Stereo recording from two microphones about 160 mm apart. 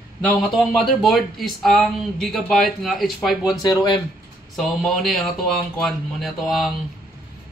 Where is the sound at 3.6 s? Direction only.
25° left (ahead or behind).